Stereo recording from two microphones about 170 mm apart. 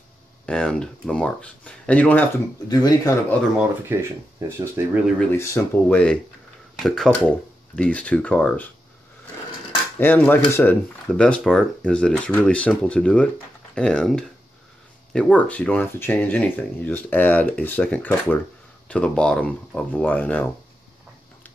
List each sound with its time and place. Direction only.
0.5 s speech: 5° left (ahead or behind)
2.7 s speech: 20° left (ahead or behind)
3.5 s speech: 15° right (ahead or behind)
5.3 s speech: 15° left (ahead or behind)
9.9 s speech: 10° left (ahead or behind)